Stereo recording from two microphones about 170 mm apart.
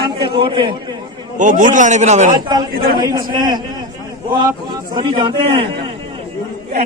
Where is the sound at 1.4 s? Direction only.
50° right (ahead or behind).